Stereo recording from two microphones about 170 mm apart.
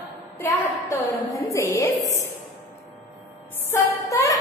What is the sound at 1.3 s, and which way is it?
Speech, 20° left (ahead or behind).